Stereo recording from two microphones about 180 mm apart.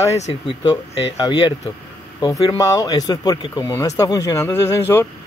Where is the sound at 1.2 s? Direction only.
25° left (ahead or behind).